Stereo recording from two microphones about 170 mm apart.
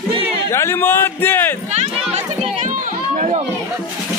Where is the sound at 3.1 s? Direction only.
45° right (ahead or behind).